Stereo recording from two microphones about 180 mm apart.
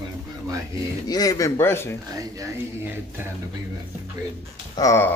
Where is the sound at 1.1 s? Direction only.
20° left (ahead or behind).